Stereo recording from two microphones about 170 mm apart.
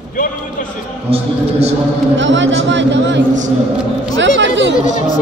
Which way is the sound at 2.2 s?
90° right.